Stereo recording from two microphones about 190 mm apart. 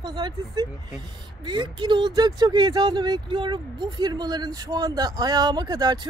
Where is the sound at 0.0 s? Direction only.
25° right (ahead or behind).